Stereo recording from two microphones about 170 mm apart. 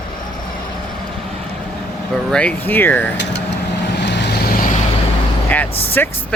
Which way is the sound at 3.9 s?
90° left.